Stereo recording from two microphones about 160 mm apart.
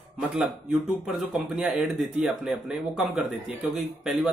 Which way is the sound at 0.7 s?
5° right (ahead or behind).